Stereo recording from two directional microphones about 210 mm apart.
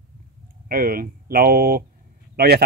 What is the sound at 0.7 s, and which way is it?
Speech, 45° right (ahead or behind).